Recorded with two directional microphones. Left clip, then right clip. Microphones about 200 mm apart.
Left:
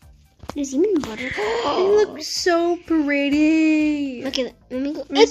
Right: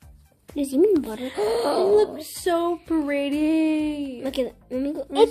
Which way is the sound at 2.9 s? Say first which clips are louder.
Left 4 dB; 35° left (ahead or behind).